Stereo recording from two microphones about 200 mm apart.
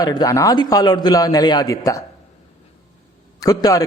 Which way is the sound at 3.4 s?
20° left (ahead or behind).